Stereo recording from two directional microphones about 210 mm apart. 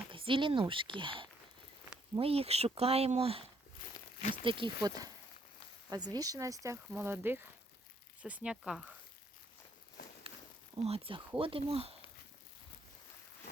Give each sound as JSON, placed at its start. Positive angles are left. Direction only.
{"t": 0.1, "sound": "speech", "side_deg": -25}
{"t": 4.2, "sound": "speech", "side_deg": 35}
{"t": 4.4, "sound": "speech", "side_deg": -25}
{"t": 10.8, "sound": "speech", "side_deg": -30}